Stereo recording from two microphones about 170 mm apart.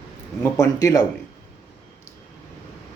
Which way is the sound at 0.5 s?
20° left (ahead or behind).